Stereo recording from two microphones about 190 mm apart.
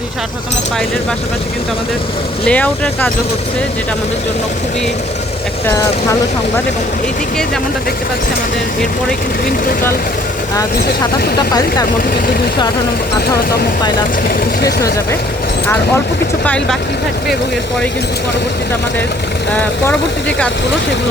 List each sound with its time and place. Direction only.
2.5 s speech: 10° left (ahead or behind)
5.6 s speech: 15° left (ahead or behind)
19.9 s speech: 5° left (ahead or behind)